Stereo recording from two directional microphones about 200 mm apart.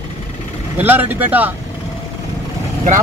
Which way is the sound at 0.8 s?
10° right (ahead or behind).